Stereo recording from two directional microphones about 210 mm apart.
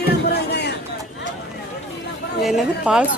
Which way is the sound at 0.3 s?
50° left (ahead or behind).